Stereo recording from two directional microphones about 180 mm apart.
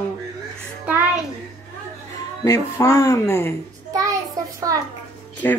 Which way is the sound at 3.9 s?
20° right (ahead or behind).